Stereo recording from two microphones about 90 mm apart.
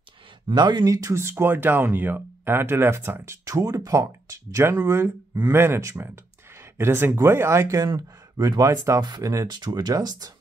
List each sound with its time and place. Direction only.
0.6 s speech: 55° right (ahead or behind)
1.2 s speech: 25° right (ahead or behind); by 10.3 s 45° right (ahead or behind)